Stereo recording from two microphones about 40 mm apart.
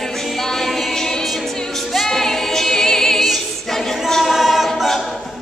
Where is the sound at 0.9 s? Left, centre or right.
Centre.